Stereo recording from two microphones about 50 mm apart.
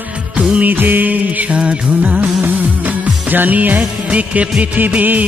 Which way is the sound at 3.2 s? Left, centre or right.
Right.